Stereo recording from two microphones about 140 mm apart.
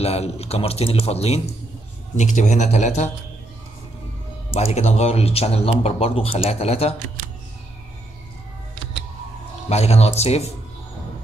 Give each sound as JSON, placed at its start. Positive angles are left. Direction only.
{"t": 0.0, "sound": "speech", "side_deg": 45}
{"t": 2.1, "sound": "a man's voice", "side_deg": 60}
{"t": 4.5, "sound": "speech", "side_deg": 45}
{"t": 9.7, "sound": "speech", "side_deg": 50}